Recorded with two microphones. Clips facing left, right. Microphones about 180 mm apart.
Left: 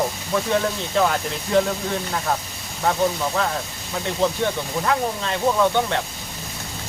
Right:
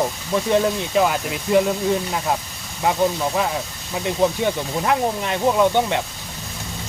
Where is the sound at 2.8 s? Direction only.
15° right (ahead or behind).